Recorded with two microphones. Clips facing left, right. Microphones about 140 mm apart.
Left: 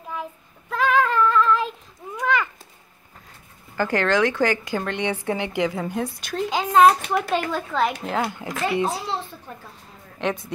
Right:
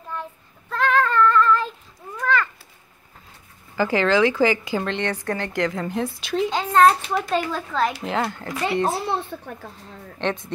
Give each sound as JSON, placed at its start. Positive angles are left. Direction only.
{"t": 0.1, "sound": "child singing", "side_deg": 10}
{"t": 2.1, "sound": "a sound", "side_deg": 10}
{"t": 3.7, "sound": "a woman's voice", "side_deg": -5}
{"t": 4.8, "sound": "speech", "side_deg": 5}
{"t": 5.6, "sound": "a woman's voice", "side_deg": 5}
{"t": 6.5, "sound": "a woman's voice", "side_deg": 10}
{"t": 8.8, "sound": "a child's voice", "side_deg": -55}
{"t": 10.1, "sound": "a woman's voice", "side_deg": 5}